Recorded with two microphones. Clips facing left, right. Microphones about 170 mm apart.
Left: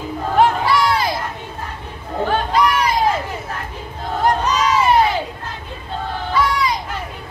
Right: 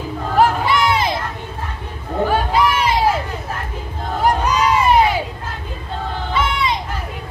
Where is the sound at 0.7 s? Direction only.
20° right (ahead or behind).